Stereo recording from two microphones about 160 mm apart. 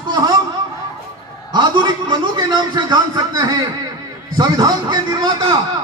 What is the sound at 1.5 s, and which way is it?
A man's voice, 30° right (ahead or behind).